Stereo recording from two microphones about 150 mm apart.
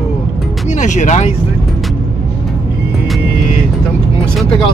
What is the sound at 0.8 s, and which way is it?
Speech, 55° left (ahead or behind).